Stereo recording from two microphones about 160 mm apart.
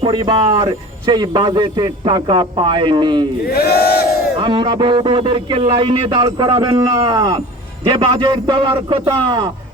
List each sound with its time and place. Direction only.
0.0 s speech: 30° right (ahead or behind)
3.4 s a sound: 70° left (ahead or behind)
4.4 s a man's voice: 30° right (ahead or behind)